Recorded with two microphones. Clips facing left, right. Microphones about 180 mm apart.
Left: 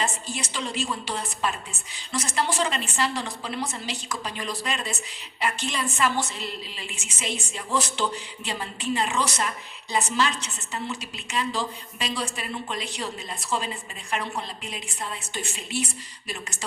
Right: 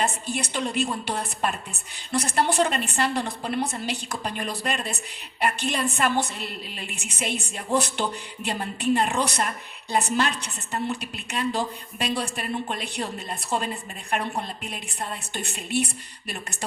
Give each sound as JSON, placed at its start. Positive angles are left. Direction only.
{"t": 0.0, "sound": "a woman's voice", "side_deg": -60}